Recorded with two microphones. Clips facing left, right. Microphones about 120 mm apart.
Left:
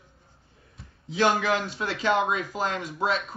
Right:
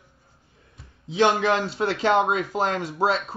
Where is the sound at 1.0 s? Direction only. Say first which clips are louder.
Right 3 dB; 25° right (ahead or behind).